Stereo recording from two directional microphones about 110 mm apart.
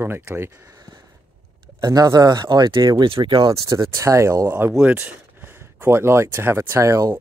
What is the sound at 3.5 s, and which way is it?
Speech, 30° right (ahead or behind).